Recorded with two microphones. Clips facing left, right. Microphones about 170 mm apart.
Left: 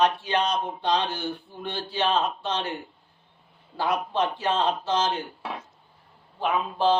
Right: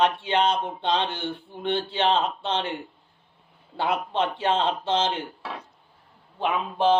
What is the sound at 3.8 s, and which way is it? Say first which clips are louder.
Speech: even; 25° right (ahead or behind).